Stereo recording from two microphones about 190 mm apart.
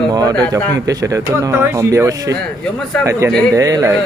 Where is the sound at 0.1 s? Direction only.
20° right (ahead or behind).